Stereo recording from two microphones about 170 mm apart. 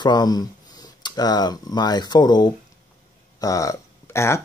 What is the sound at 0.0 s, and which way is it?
Speech, 25° left (ahead or behind).